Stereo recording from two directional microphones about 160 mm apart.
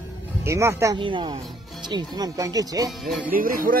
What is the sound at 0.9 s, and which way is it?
Speech, 30° right (ahead or behind).